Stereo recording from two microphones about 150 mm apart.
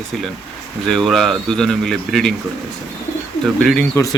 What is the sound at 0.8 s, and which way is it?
Speech, centre (ahead or behind).